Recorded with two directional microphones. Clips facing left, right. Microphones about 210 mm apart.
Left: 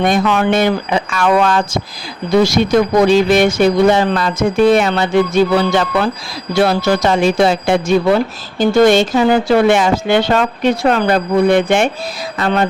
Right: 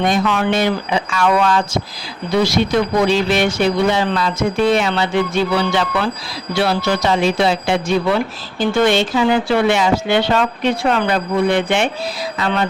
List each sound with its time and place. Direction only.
0.0 s speech: 50° left (ahead or behind)